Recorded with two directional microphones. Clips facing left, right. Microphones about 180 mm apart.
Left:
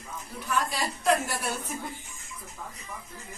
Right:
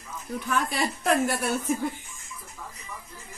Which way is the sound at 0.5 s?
55° right (ahead or behind).